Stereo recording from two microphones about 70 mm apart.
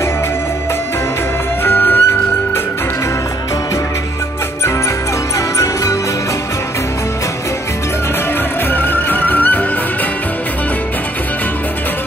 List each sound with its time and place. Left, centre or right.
1.6 s music: left
8.7 s music: left